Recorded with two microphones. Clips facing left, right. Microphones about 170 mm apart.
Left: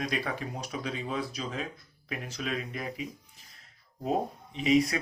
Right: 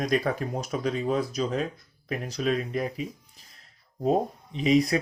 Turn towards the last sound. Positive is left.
turn(degrees=-35)  # may be behind; listen again after turning